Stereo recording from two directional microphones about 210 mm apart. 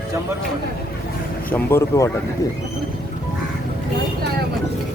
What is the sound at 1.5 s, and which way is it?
Speech, 10° left (ahead or behind).